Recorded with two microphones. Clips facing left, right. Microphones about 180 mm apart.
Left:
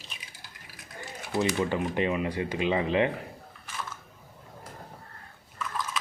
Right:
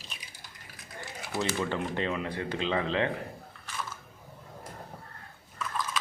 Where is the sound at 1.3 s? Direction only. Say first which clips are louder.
Left 4 dB; 15° left (ahead or behind).